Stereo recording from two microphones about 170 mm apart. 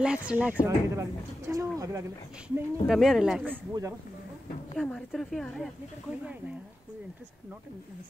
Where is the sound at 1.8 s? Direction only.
20° right (ahead or behind).